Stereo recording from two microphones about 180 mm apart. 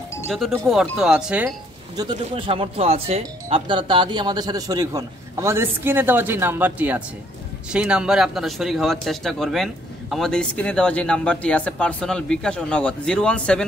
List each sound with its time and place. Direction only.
0.3 s speech: centre (ahead or behind)
2.0 s speech: 25° right (ahead or behind); by 13.7 s 5° left (ahead or behind)